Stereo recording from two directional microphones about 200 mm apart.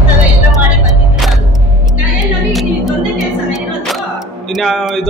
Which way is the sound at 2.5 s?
Centre (ahead or behind).